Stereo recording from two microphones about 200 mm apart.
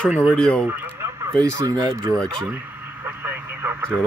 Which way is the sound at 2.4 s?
10° right (ahead or behind).